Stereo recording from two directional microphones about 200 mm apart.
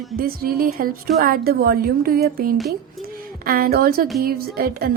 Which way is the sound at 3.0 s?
45° right (ahead or behind).